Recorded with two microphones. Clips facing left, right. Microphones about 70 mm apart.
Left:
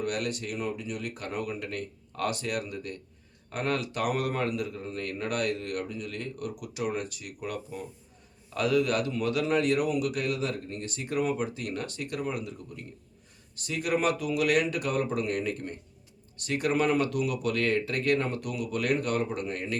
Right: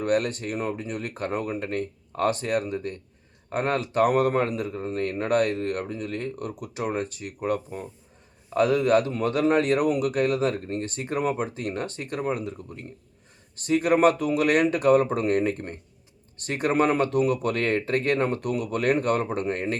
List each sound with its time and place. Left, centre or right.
0.0 s a man's voice: right